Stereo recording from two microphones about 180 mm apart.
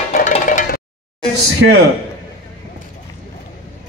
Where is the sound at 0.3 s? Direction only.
45° left (ahead or behind).